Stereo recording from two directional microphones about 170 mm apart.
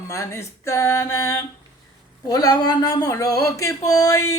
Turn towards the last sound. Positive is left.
turn(degrees=15)  # may be behind; listen again after turning